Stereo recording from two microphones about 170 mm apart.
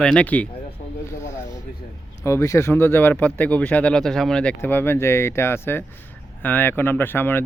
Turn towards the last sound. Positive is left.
turn(degrees=10)  # may be behind; listen again after turning